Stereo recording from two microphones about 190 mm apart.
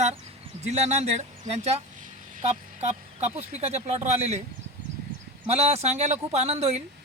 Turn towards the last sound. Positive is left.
turn(degrees=-35)  # may be behind; listen again after turning